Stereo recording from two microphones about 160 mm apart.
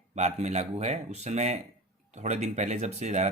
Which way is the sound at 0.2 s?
45° right (ahead or behind).